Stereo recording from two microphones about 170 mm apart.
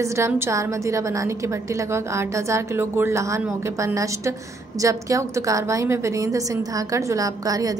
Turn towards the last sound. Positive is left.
turn(degrees=-20)  # may be behind; listen again after turning